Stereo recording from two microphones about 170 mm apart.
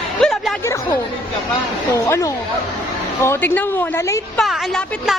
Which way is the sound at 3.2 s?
15° left (ahead or behind).